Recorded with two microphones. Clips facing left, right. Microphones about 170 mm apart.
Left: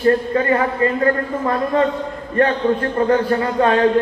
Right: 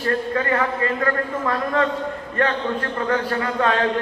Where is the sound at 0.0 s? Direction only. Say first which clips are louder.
Left 6 dB; 30° left (ahead or behind).